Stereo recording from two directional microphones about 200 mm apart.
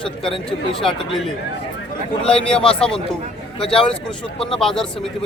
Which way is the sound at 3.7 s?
5° left (ahead or behind).